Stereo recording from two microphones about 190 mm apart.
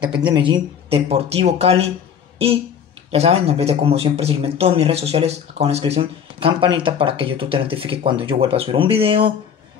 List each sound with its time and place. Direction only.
0.0 s speech: 25° right (ahead or behind)
3.1 s speech: 35° right (ahead or behind)